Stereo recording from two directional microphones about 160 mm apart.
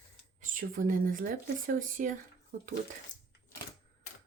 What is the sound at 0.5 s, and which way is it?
Speech, 60° right (ahead or behind).